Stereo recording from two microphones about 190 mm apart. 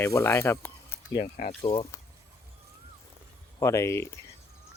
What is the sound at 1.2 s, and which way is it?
Speech, 40° left (ahead or behind).